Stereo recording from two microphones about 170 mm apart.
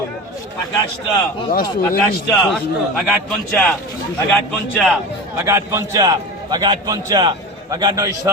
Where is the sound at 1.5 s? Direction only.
60° left (ahead or behind).